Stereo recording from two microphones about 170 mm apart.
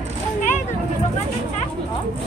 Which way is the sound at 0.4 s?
45° left (ahead or behind).